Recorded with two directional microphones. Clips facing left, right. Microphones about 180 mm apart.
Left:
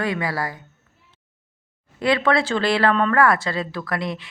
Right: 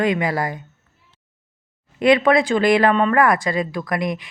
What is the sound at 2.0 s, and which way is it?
Speech, 20° right (ahead or behind).